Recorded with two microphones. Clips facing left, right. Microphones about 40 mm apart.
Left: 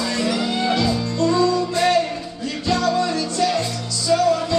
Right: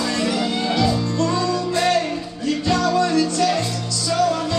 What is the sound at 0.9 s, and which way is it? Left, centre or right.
Music, centre.